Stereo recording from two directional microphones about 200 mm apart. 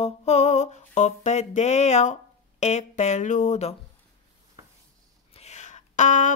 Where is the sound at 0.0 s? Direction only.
35° left (ahead or behind).